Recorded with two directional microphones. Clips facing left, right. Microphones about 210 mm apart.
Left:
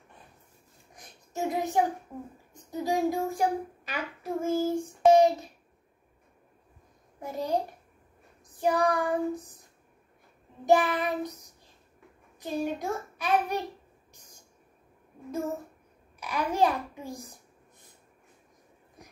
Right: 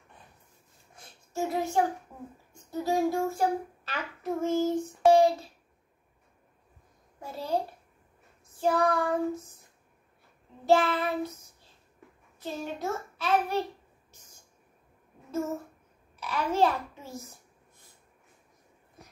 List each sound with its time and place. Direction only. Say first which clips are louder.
0.9 s child singing: right 1 dB; 15° left (ahead or behind)
2.5 s speech: even; 15° left (ahead or behind)
3.3 s child singing: even; 15° left (ahead or behind)
5.1 s a child's voice: left 1 dB; 20° left (ahead or behind)
7.2 s child singing: left 1 dB; 15° left (ahead or behind)
10.6 s child singing: even; 15° left (ahead or behind)
14.1 s a sound: left 1 dB; 15° left (ahead or behind)
16.2 s child singing: even; 15° left (ahead or behind)